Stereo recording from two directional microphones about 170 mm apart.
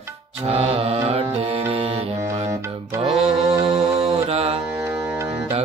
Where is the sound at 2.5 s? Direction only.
20° right (ahead or behind).